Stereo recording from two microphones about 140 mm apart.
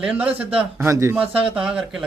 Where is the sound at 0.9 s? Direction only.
20° right (ahead or behind).